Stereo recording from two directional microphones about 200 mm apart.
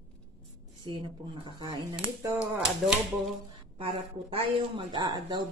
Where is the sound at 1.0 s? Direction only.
25° right (ahead or behind).